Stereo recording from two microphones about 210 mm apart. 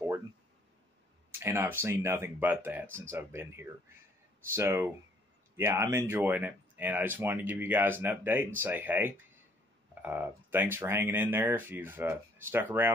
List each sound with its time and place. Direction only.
1.4 s speech: 10° right (ahead or behind)